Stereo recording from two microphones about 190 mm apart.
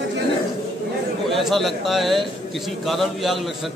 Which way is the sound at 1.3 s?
Centre (ahead or behind).